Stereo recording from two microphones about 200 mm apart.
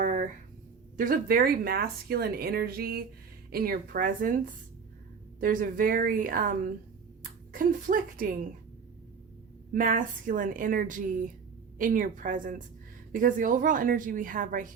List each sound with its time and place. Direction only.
0.0 s a sound: 40° right (ahead or behind)
0.9 s speech: 45° right (ahead or behind)
5.4 s speech: 45° right (ahead or behind)
9.7 s a woman's voice: 45° right (ahead or behind)